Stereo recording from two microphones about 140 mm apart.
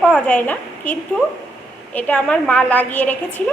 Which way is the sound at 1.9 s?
10° left (ahead or behind).